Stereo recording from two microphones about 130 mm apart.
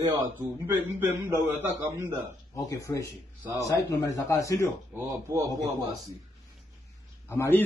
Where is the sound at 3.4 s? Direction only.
20° right (ahead or behind).